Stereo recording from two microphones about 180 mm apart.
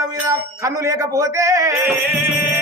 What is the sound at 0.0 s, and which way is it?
Speech, 15° right (ahead or behind).